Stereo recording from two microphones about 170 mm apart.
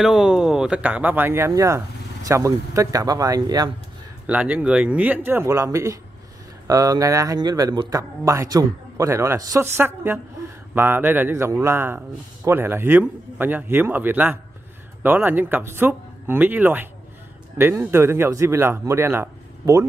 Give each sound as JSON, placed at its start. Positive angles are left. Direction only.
{"t": 0.0, "sound": "speech", "side_deg": 0}
{"t": 4.3, "sound": "speech", "side_deg": -10}